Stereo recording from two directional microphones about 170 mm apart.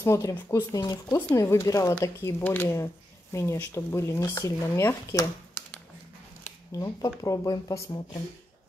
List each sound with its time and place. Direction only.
0.0 s speech: 20° left (ahead or behind)
6.4 s a sound: 20° left (ahead or behind)
7.2 s speech: 20° left (ahead or behind)